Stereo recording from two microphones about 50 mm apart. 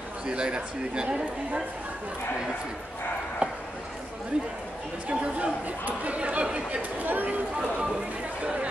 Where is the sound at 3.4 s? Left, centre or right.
Right.